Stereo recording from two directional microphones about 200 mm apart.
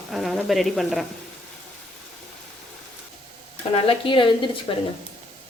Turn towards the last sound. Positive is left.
turn(degrees=25)  # may be behind; listen again after turning